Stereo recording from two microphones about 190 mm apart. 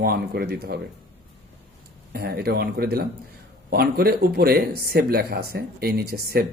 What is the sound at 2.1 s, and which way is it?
Speech, 55° right (ahead or behind).